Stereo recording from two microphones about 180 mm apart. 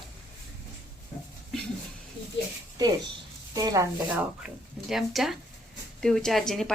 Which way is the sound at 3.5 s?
20° right (ahead or behind).